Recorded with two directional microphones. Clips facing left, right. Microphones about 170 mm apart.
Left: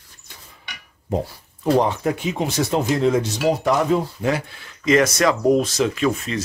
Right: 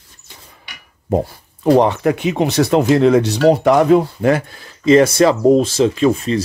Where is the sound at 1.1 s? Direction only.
65° right (ahead or behind).